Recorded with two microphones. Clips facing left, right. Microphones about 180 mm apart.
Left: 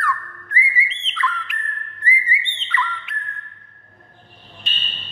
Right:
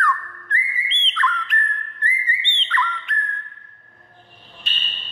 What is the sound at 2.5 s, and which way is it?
Bird, 5° left (ahead or behind).